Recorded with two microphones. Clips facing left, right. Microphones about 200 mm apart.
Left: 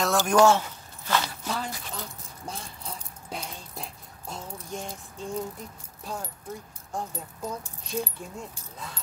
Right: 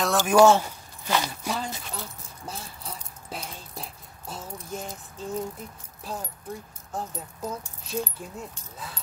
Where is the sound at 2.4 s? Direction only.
5° right (ahead or behind).